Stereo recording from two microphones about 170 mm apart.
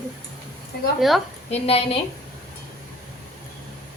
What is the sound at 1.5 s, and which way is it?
Speech, 35° left (ahead or behind).